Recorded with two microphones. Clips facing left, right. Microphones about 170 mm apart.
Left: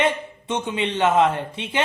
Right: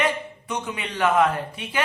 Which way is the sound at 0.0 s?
25° left (ahead or behind).